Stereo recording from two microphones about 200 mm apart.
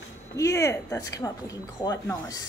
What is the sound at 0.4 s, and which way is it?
A woman's voice, 15° left (ahead or behind).